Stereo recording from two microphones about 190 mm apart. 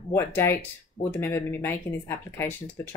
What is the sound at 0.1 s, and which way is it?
Speech, 10° left (ahead or behind).